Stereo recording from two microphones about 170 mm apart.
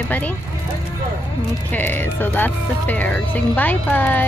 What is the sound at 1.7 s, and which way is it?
Speech, 10° left (ahead or behind).